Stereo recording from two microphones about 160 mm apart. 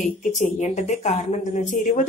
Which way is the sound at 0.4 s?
50° left (ahead or behind).